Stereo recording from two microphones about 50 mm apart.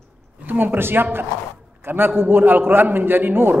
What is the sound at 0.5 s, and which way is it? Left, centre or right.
A man's voice, right.